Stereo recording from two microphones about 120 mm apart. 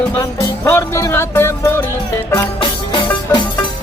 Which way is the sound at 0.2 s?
25° left (ahead or behind).